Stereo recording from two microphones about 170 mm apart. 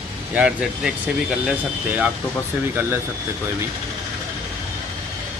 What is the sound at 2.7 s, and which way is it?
Speech, 10° right (ahead or behind).